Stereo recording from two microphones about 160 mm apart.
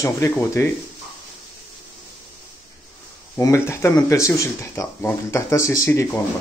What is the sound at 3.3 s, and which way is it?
Speech, 15° left (ahead or behind).